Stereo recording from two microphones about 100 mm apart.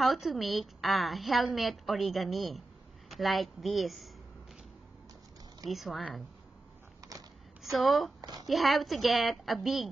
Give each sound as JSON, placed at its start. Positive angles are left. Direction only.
{"t": 0.0, "sound": "a woman's voice", "side_deg": 0}
{"t": 5.7, "sound": "a woman's voice", "side_deg": 0}
{"t": 7.0, "sound": "a sound", "side_deg": -35}
{"t": 7.6, "sound": "a woman's voice", "side_deg": 0}
{"t": 8.2, "sound": "a sound", "side_deg": -40}
{"t": 8.5, "sound": "a woman's voice", "side_deg": 0}